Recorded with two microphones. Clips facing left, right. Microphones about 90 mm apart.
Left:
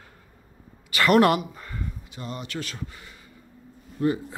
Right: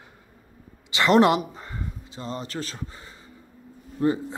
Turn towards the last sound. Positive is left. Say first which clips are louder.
# right 1 dB
turn(degrees=-30)  # may be behind; listen again after turning